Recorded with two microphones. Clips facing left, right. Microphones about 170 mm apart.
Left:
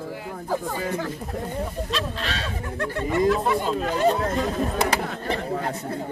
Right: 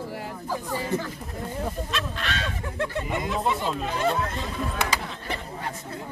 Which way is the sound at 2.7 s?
20° right (ahead or behind).